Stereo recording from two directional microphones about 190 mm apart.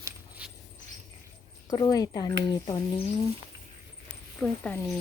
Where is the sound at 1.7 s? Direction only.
20° left (ahead or behind).